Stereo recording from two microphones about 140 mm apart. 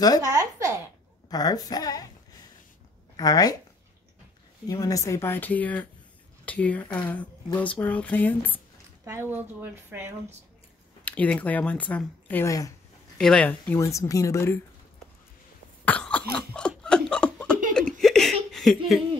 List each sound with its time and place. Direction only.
0.2 s speech: 25° right (ahead or behind)
1.3 s speech: 25° left (ahead or behind)
3.2 s speech: 25° left (ahead or behind)
4.6 s speech: 25° left (ahead or behind)
9.0 s speech: 20° right (ahead or behind)
11.1 s speech: 10° left (ahead or behind)
13.7 s speech: 20° left (ahead or behind)
15.8 s cough: 10° left (ahead or behind)
17.7 s laughter: 5° left (ahead or behind)